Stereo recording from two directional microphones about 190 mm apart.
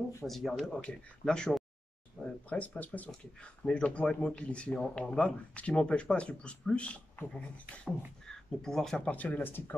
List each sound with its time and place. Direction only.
0.2 s speech: centre (ahead or behind)